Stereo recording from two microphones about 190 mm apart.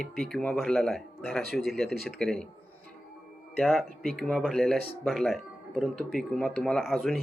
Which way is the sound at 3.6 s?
Centre (ahead or behind).